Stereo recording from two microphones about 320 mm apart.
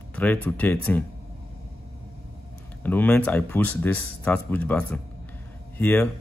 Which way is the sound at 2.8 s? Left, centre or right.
Centre.